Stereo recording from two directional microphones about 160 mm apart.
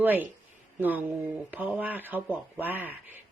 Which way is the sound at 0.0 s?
10° right (ahead or behind).